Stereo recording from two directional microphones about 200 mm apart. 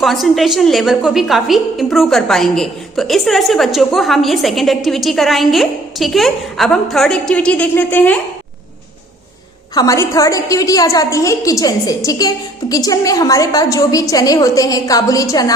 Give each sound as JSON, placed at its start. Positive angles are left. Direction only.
{"t": 0.0, "sound": "a woman's voice", "side_deg": 0}
{"t": 9.7, "sound": "a woman's voice", "side_deg": 15}